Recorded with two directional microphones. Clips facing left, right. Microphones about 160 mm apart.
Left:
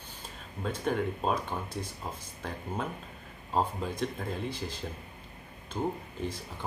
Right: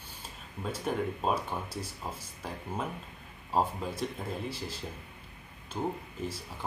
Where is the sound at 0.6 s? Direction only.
5° right (ahead or behind).